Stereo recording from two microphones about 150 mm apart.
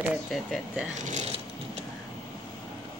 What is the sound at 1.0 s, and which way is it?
Speech, 55° right (ahead or behind).